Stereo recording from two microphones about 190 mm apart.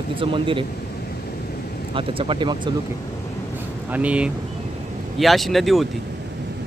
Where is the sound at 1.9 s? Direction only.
30° right (ahead or behind).